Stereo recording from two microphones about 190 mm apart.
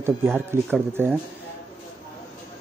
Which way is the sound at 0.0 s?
10° right (ahead or behind).